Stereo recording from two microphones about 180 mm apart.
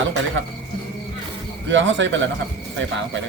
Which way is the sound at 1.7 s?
90° right.